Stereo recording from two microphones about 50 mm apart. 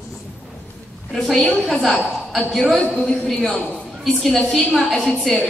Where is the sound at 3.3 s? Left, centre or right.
Centre.